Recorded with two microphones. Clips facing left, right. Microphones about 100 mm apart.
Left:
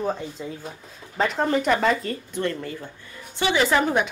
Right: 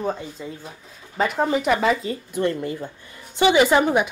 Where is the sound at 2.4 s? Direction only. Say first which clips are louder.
Right 5 dB; 15° right (ahead or behind).